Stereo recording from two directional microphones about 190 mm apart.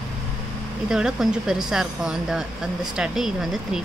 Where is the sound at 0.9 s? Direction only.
5° right (ahead or behind).